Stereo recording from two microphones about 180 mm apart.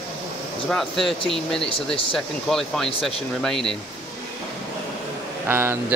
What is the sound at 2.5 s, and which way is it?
Speech, centre (ahead or behind).